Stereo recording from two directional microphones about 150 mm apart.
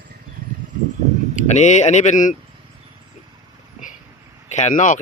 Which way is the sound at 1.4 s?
50° left (ahead or behind).